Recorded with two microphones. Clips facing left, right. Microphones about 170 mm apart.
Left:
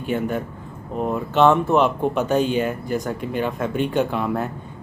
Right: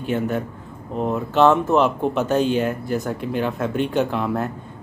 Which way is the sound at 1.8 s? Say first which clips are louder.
Even; 10° left (ahead or behind).